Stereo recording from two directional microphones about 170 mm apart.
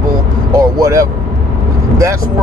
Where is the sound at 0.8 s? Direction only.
20° right (ahead or behind).